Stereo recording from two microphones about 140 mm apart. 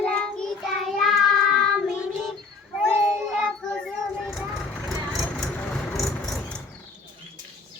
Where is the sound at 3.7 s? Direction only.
5° left (ahead or behind).